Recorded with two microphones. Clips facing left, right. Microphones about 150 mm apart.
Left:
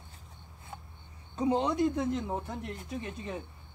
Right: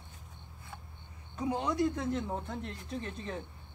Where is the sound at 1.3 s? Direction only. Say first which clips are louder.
Left 5 dB; 25° left (ahead or behind).